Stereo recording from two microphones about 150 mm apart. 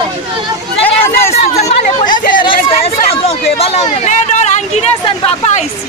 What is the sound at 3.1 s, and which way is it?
Speech, 40° left (ahead or behind).